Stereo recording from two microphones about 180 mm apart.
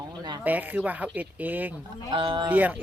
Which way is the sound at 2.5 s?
10° right (ahead or behind).